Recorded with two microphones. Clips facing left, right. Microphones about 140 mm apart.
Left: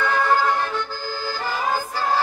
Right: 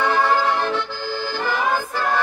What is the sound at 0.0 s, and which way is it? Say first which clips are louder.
Accordion: right 1 dB; 55° right (ahead or behind).